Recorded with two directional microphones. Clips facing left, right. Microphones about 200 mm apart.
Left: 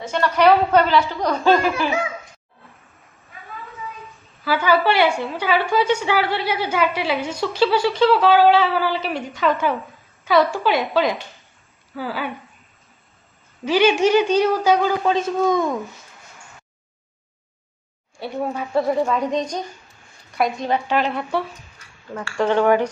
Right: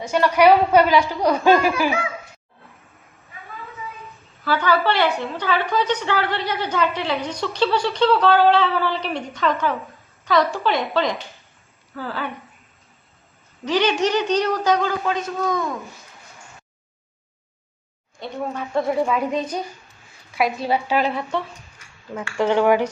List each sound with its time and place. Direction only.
0.1 s a woman's voice: 10° right (ahead or behind)
4.4 s a woman's voice: 10° left (ahead or behind)
7.4 s a sound: 5° left (ahead or behind)
11.9 s a woman's voice: 10° left (ahead or behind)
13.7 s a woman's voice: 10° left (ahead or behind)
15.1 s a man's voice: 20° left (ahead or behind)
18.2 s a sound: 10° left (ahead or behind)
22.1 s a woman's voice: 10° right (ahead or behind)